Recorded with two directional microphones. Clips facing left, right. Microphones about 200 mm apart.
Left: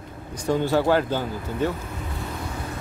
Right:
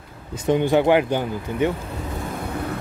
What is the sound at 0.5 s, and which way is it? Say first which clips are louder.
Speech: right 3 dB; 20° right (ahead or behind).